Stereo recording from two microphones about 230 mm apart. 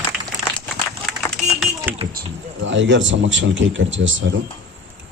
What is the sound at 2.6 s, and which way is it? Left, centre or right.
Speech, right.